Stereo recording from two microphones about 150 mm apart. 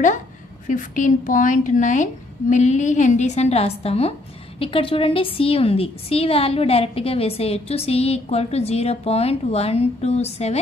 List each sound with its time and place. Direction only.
0.7 s a woman's voice: 60° left (ahead or behind)